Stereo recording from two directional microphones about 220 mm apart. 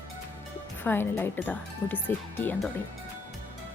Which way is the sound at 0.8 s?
10° left (ahead or behind).